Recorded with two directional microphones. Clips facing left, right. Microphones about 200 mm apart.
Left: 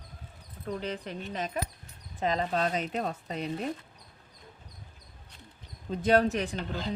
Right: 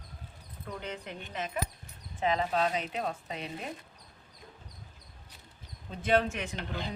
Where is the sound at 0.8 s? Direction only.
35° left (ahead or behind).